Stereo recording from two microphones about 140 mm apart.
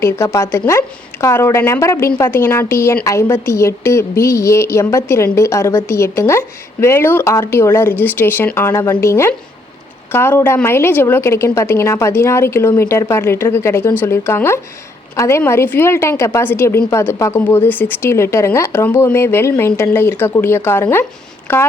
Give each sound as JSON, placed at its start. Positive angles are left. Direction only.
{"t": 0.0, "sound": "a woman's voice", "side_deg": 20}